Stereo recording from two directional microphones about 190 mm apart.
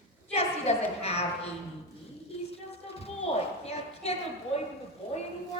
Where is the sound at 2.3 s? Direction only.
35° left (ahead or behind).